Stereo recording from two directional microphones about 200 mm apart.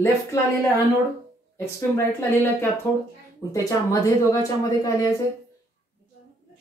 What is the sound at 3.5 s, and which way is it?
Speech, 15° left (ahead or behind).